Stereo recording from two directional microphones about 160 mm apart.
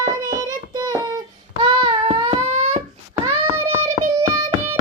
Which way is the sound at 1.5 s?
30° right (ahead or behind).